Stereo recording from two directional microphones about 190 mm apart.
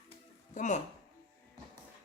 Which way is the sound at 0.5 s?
40° left (ahead or behind).